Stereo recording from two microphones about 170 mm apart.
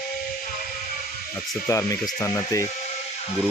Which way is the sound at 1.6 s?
15° left (ahead or behind).